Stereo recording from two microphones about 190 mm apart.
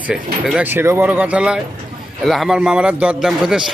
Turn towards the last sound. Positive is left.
turn(degrees=-5)  # may be behind; listen again after turning